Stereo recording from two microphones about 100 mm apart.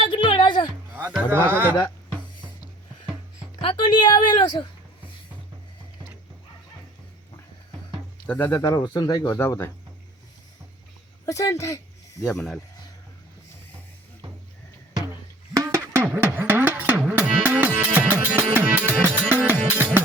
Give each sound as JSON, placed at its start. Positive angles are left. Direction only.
{"t": 0.0, "sound": "music", "side_deg": 55}
{"t": 1.5, "sound": "speech", "side_deg": -20}
{"t": 3.6, "sound": "a woman's voice", "side_deg": 50}
{"t": 8.3, "sound": "speech", "side_deg": 20}
{"t": 8.7, "sound": "speech", "side_deg": 40}
{"t": 11.3, "sound": "speech", "side_deg": 35}
{"t": 12.2, "sound": "speech", "side_deg": 5}
{"t": 15.5, "sound": "a sound", "side_deg": -30}
{"t": 16.0, "sound": "music", "side_deg": -20}